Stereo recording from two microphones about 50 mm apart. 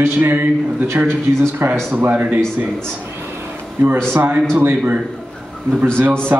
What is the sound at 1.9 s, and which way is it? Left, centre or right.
Speech, right.